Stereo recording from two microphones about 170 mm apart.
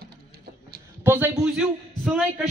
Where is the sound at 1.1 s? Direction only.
15° right (ahead or behind).